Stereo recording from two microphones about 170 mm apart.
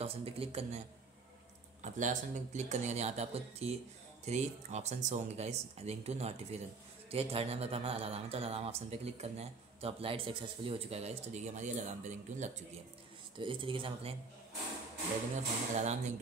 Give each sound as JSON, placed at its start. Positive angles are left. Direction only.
{"t": 0.0, "sound": "a man's voice", "side_deg": -35}
{"t": 13.4, "sound": "speech", "side_deg": -30}
{"t": 15.7, "sound": "speech", "side_deg": -45}